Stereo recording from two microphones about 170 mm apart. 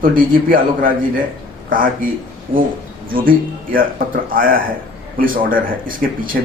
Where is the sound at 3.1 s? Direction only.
55° right (ahead or behind).